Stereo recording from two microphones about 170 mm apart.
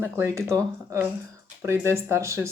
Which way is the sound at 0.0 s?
15° right (ahead or behind).